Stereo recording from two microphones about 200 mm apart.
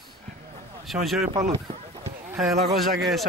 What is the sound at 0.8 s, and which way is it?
Speech, centre (ahead or behind).